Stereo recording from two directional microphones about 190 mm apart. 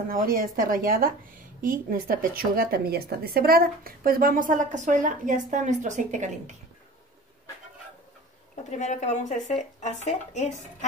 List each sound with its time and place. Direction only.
0.1 s a woman's voice: 50° right (ahead or behind)
8.6 s speech: 40° left (ahead or behind)